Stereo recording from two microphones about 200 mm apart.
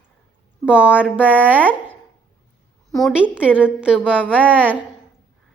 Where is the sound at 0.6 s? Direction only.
5° right (ahead or behind).